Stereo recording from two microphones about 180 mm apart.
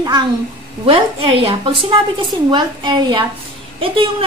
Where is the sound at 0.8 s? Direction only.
30° right (ahead or behind).